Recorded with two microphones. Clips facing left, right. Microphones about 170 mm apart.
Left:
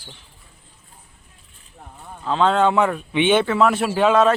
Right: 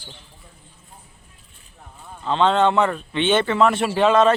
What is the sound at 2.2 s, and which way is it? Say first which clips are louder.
Speech: even; 5° left (ahead or behind).